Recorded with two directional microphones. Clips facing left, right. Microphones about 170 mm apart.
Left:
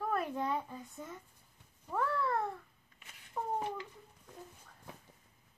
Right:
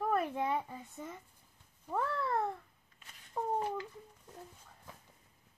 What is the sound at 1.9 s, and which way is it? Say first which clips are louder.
Speech: left 1 dB; 25° right (ahead or behind).